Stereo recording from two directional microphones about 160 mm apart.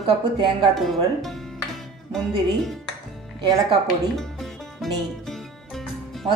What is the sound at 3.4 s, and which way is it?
Speech, 30° right (ahead or behind).